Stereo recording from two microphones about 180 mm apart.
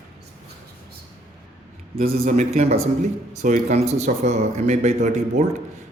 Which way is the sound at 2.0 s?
40° right (ahead or behind).